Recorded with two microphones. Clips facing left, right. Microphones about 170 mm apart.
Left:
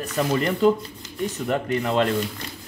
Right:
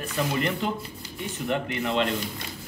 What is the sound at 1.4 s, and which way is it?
Speech, 45° left (ahead or behind).